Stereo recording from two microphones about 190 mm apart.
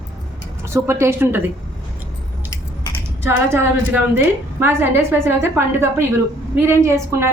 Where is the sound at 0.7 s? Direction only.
15° right (ahead or behind).